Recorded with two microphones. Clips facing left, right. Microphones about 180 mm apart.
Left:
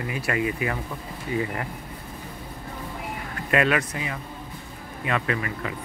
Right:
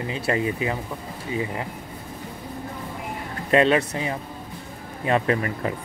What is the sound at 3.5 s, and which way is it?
Speech, 30° right (ahead or behind).